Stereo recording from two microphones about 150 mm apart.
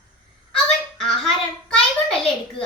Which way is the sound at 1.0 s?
5° left (ahead or behind).